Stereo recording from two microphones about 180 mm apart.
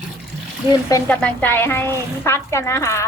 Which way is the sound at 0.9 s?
15° left (ahead or behind).